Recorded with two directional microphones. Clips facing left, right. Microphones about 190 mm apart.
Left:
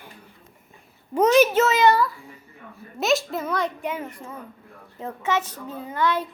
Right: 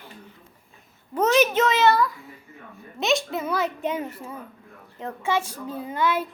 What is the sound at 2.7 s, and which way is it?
Speech, centre (ahead or behind).